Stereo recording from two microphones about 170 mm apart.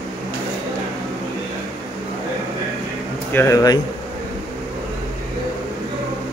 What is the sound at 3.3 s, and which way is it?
Speech, 15° left (ahead or behind).